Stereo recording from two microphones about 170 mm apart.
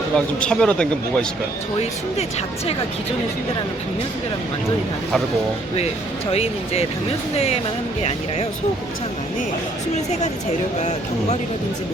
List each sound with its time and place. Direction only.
0.3 s speech: 5° left (ahead or behind)
6.3 s speech: 35° left (ahead or behind)
10.8 s speech: 40° left (ahead or behind)